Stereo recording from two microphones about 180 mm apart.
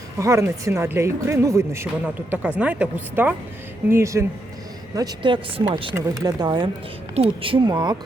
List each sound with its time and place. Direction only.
0.2 s a woman's voice: 15° right (ahead or behind)